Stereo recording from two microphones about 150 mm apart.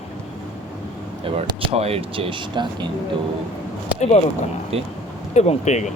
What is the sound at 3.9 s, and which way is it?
Speech, 50° left (ahead or behind).